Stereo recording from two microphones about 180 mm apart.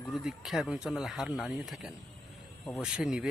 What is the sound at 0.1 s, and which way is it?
Speech, centre (ahead or behind).